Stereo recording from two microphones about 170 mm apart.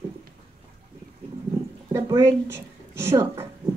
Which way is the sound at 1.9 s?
15° right (ahead or behind).